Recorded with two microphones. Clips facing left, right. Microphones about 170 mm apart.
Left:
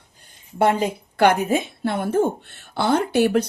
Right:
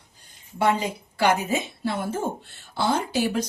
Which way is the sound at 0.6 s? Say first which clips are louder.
Left 4 dB; 55° left (ahead or behind).